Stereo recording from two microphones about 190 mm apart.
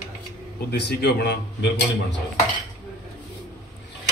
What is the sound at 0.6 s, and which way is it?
Speech, 60° left (ahead or behind).